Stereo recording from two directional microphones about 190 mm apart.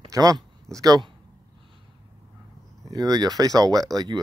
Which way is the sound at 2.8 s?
20° right (ahead or behind).